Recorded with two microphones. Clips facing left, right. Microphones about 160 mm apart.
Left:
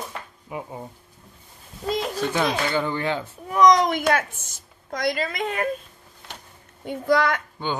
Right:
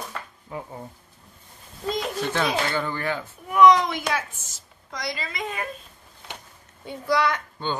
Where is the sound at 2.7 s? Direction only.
20° left (ahead or behind).